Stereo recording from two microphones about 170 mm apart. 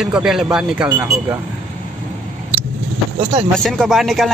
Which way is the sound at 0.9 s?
15° right (ahead or behind).